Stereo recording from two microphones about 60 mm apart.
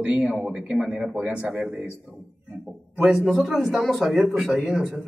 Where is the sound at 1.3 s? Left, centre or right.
Right.